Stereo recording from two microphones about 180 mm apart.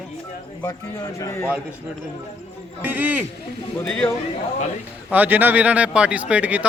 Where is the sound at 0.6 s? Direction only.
20° left (ahead or behind).